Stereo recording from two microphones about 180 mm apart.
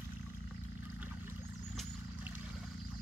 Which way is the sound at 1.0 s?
10° right (ahead or behind).